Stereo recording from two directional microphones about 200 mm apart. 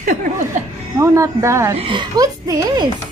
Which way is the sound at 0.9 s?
15° right (ahead or behind).